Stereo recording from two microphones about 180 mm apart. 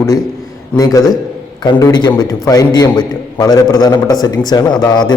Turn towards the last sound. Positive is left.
turn(degrees=25)  # may be behind; listen again after turning